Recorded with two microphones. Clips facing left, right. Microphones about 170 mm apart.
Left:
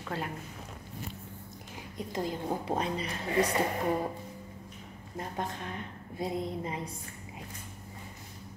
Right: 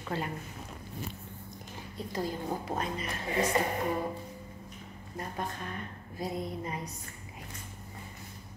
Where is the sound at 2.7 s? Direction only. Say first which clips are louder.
Left 4 dB; 30° left (ahead or behind).